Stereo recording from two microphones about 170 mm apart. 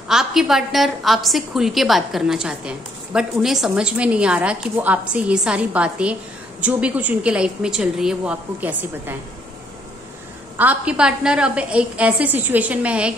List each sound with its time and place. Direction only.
0.1 s a woman's voice: centre (ahead or behind)
10.6 s a woman's voice: 10° right (ahead or behind)